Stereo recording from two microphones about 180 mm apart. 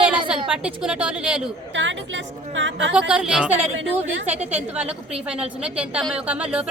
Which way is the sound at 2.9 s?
5° right (ahead or behind).